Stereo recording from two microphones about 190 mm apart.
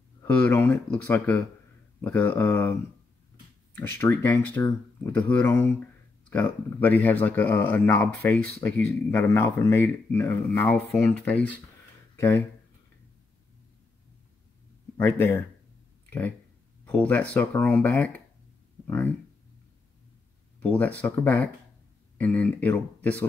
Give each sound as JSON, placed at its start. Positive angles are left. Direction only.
{"t": 0.2, "sound": "speech", "side_deg": 10}
{"t": 3.7, "sound": "speech", "side_deg": 10}
{"t": 15.0, "sound": "speech", "side_deg": 10}
{"t": 20.6, "sound": "speech", "side_deg": 10}